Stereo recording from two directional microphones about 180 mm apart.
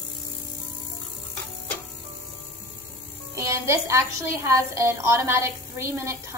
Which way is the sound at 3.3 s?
15° right (ahead or behind).